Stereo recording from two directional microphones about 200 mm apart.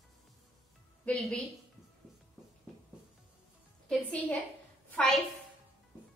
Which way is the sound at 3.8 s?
5° left (ahead or behind).